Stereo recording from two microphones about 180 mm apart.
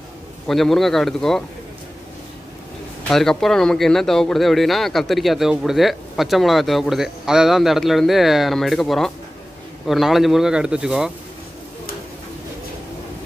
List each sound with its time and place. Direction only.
0.5 s a man's voice: centre (ahead or behind)
3.0 s a man's voice: 5° left (ahead or behind)